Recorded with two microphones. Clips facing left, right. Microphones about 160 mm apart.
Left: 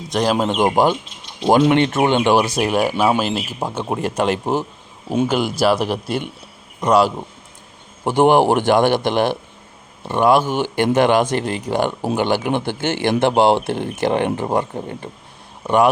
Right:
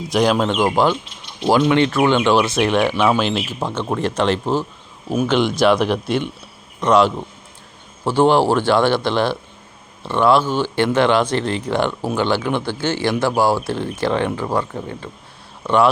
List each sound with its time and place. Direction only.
0.1 s speech: centre (ahead or behind)